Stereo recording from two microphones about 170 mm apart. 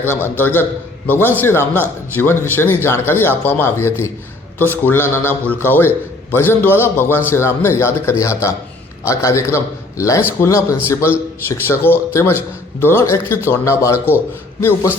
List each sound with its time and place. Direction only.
0.1 s a man's voice: 10° left (ahead or behind)